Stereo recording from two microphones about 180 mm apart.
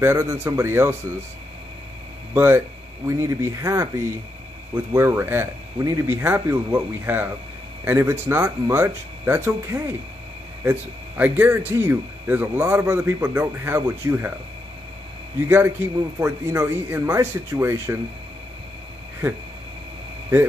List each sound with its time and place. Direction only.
0.0 s speech: 15° right (ahead or behind)
2.3 s speech: 15° right (ahead or behind)
15.4 s speech: 10° right (ahead or behind)